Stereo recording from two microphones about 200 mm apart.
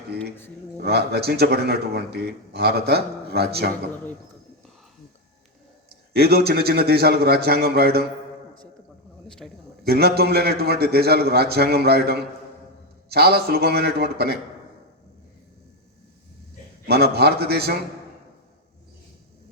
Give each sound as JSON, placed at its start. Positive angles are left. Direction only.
{"t": 0.8, "sound": "a man's voice", "side_deg": -55}
{"t": 6.1, "sound": "a man's voice", "side_deg": -50}
{"t": 9.4, "sound": "a man's voice", "side_deg": 0}
{"t": 9.8, "sound": "a man's voice", "side_deg": -50}
{"t": 16.8, "sound": "a man's voice", "side_deg": -55}